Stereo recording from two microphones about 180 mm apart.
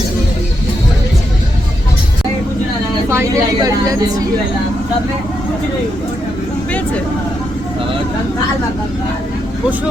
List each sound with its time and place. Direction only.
3.1 s vehicle: 15° right (ahead or behind)